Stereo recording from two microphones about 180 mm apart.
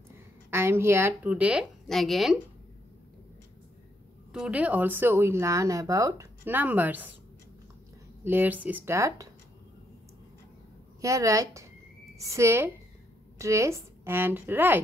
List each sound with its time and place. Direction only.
0.5 s speech: 15° right (ahead or behind)
4.3 s speech: 5° right (ahead or behind)
8.2 s speech: 10° right (ahead or behind)
11.0 s a woman's voice: 15° right (ahead or behind)